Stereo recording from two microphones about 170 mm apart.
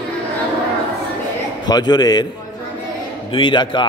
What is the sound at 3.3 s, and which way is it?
Speech, 30° left (ahead or behind).